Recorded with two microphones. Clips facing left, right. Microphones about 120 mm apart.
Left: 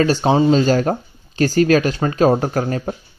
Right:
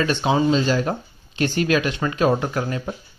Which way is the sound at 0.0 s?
35° left (ahead or behind).